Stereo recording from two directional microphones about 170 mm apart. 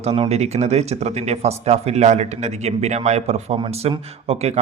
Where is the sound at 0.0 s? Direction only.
35° right (ahead or behind).